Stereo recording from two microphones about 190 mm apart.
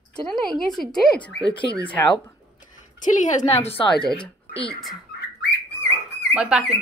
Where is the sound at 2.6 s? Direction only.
40° left (ahead or behind).